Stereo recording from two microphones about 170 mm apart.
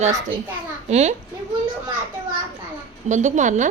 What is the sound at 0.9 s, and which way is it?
Speech, 40° right (ahead or behind).